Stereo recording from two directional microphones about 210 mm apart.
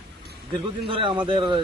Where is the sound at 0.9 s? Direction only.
25° right (ahead or behind).